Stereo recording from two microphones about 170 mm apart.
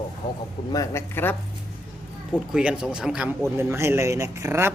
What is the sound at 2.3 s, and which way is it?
Speech, 5° right (ahead or behind).